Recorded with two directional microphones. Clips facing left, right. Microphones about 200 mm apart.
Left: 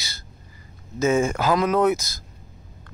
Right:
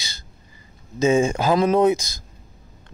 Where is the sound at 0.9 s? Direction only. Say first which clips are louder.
Right 2 dB; 15° right (ahead or behind).